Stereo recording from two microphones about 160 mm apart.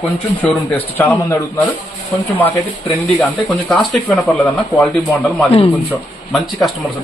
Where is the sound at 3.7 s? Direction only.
Centre (ahead or behind).